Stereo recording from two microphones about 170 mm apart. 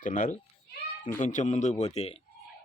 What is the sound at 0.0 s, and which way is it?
Speech, 50° left (ahead or behind).